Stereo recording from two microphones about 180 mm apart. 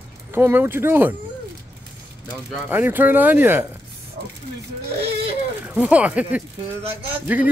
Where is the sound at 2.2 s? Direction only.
10° right (ahead or behind).